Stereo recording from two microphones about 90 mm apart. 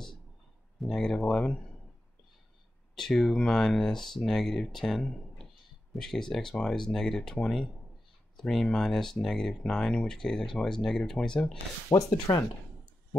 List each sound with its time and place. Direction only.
0.7 s speech: 5° left (ahead or behind)
3.0 s speech: 5° left (ahead or behind)
11.9 s speech: 45° left (ahead or behind)